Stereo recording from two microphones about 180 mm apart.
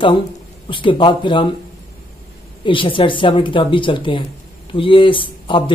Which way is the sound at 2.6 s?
30° left (ahead or behind).